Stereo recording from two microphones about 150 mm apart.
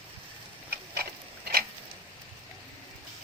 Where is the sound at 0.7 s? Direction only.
90° right.